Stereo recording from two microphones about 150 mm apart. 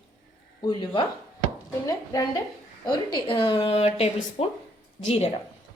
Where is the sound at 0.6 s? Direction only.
30° left (ahead or behind).